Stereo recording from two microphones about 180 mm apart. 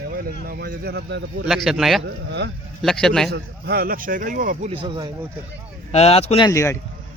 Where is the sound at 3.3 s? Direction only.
60° right (ahead or behind).